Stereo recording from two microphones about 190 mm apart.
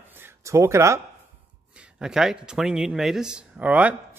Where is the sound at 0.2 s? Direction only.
15° right (ahead or behind).